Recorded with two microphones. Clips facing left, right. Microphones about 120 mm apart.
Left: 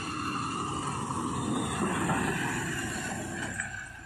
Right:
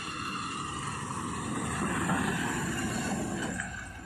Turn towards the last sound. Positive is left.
turn(degrees=-30)  # may be behind; listen again after turning